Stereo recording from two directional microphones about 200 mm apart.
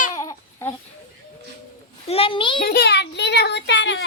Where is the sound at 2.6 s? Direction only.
55° left (ahead or behind).